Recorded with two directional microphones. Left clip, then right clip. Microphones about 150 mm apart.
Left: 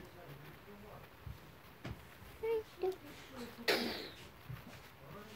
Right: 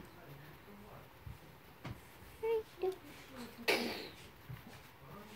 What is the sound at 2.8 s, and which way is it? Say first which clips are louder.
Speech: even; 5° right (ahead or behind).